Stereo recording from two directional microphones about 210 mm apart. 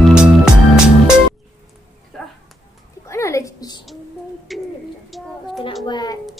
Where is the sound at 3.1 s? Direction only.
15° left (ahead or behind).